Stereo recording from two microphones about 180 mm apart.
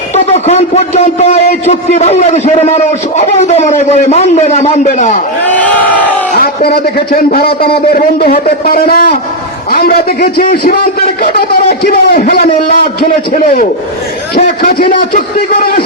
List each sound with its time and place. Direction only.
0.1 s a man's voice: 35° left (ahead or behind)
5.5 s crowd: 10° left (ahead or behind)
6.4 s a man's voice: 60° left (ahead or behind)